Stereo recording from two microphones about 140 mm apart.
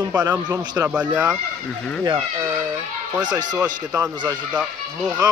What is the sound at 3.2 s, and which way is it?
Speech, 30° right (ahead or behind).